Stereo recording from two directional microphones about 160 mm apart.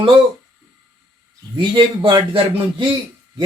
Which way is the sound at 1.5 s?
30° right (ahead or behind).